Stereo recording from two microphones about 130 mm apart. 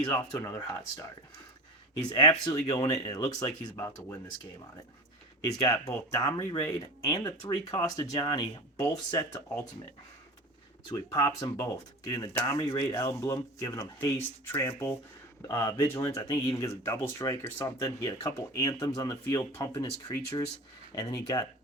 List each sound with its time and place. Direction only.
0.1 s speech: 30° left (ahead or behind)
2.1 s speech: 30° left (ahead or behind)
5.4 s speech: 30° left (ahead or behind)
10.9 s speech: 30° left (ahead or behind)
12.3 s speech: 20° left (ahead or behind)
12.5 s speech: 30° left (ahead or behind)